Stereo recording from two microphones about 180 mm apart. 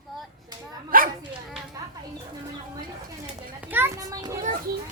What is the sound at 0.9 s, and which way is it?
Dog, 50° right (ahead or behind).